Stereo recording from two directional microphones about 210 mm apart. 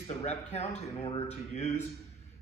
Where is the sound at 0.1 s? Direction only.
30° left (ahead or behind).